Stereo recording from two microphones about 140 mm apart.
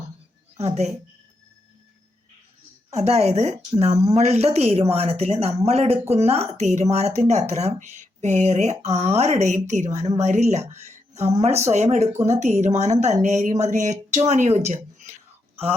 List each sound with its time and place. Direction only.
0.5 s a woman's voice: 50° right (ahead or behind)
2.9 s speech: 50° right (ahead or behind)